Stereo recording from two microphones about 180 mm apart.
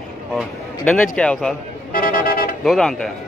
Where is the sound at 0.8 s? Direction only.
5° left (ahead or behind).